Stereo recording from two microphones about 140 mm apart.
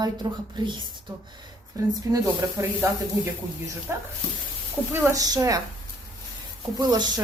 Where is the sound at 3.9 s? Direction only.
20° right (ahead or behind).